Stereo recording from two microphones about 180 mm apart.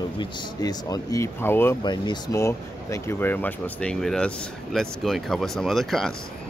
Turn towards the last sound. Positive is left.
turn(degrees=0)  # may be behind; listen again after turning